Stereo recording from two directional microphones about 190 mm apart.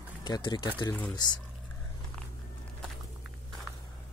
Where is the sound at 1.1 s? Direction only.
20° left (ahead or behind).